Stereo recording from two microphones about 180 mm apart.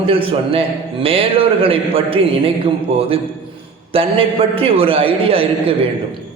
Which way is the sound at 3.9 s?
30° right (ahead or behind).